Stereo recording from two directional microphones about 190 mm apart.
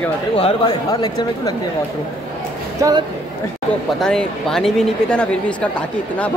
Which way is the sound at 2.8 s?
20° right (ahead or behind).